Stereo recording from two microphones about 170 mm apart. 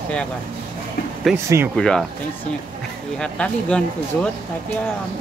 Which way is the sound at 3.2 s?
5° left (ahead or behind).